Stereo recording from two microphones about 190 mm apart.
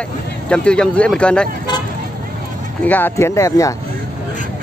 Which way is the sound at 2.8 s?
10° left (ahead or behind).